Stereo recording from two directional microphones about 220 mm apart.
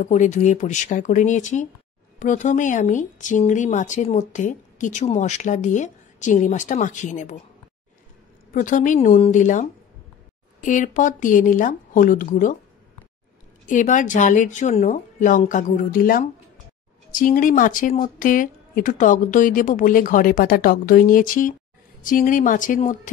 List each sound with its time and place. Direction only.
0.0 s speech: 35° left (ahead or behind)
8.5 s speech: 35° left (ahead or behind)
13.7 s speech: 35° left (ahead or behind)